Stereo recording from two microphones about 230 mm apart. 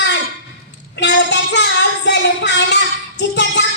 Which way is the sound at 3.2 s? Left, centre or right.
Left.